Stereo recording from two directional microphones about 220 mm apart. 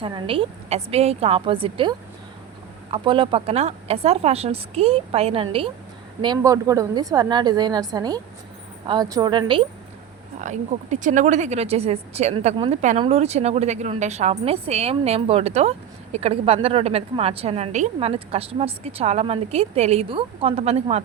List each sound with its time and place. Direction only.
0.0 s a woman's voice: 25° right (ahead or behind)
10.4 s speech: 30° right (ahead or behind)